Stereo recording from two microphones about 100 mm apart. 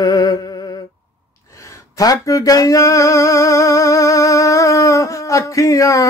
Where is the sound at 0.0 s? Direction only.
40° left (ahead or behind).